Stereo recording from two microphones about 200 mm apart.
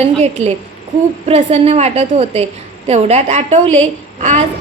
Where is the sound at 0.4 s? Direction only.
35° right (ahead or behind).